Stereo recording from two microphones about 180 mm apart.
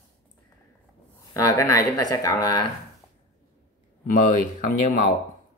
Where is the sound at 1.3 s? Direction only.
20° left (ahead or behind).